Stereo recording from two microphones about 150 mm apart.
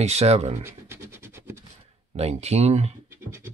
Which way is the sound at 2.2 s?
45° right (ahead or behind).